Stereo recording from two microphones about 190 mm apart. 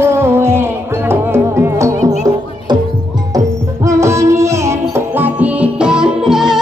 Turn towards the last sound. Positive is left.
turn(degrees=-5)  # may be behind; listen again after turning